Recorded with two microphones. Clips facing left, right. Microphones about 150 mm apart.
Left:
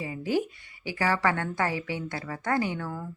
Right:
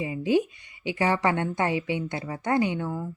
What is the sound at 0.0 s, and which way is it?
A woman's voice, 20° right (ahead or behind).